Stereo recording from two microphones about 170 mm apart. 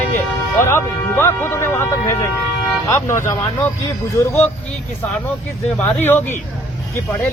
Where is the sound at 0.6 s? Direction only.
15° left (ahead or behind).